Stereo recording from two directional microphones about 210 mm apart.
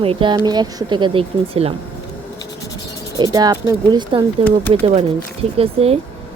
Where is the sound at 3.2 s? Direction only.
20° right (ahead or behind).